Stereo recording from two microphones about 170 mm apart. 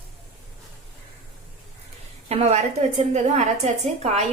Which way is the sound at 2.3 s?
40° right (ahead or behind).